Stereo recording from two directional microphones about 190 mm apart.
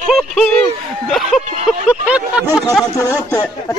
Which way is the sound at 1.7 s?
5° right (ahead or behind).